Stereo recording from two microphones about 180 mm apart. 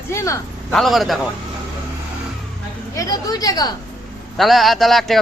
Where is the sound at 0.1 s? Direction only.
15° left (ahead or behind).